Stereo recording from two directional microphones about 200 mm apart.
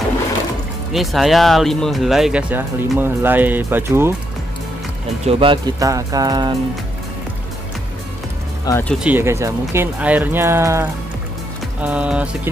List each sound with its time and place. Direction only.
0.9 s speech: centre (ahead or behind)
5.2 s speech: 25° right (ahead or behind)
8.6 s speech: 10° left (ahead or behind)
9.0 s speech: 10° right (ahead or behind)